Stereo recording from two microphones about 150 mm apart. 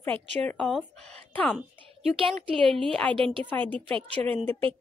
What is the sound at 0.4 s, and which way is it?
A woman's voice, 5° left (ahead or behind).